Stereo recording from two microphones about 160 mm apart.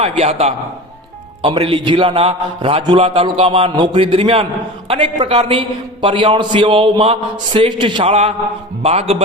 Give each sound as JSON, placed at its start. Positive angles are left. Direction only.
{"t": 0.0, "sound": "a man's voice", "side_deg": -40}